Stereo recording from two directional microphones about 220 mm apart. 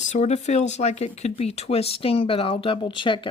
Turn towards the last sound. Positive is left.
turn(degrees=20)  # may be behind; listen again after turning